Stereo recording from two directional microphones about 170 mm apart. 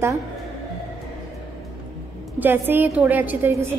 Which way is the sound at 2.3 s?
10° right (ahead or behind).